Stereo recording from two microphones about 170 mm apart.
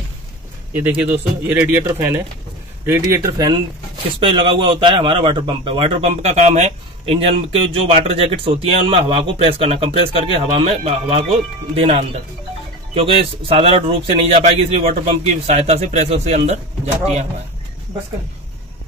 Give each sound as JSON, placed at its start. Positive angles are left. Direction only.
{"t": 0.7, "sound": "a man's voice", "side_deg": -10}